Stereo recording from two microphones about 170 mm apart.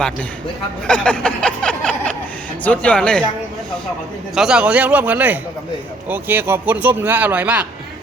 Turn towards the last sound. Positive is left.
turn(degrees=-10)  # may be behind; listen again after turning